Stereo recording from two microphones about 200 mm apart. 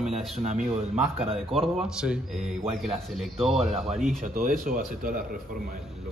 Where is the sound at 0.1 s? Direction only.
35° right (ahead or behind).